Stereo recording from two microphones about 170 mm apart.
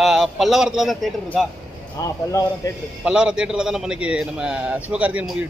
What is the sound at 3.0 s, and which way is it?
A man's voice, 5° right (ahead or behind).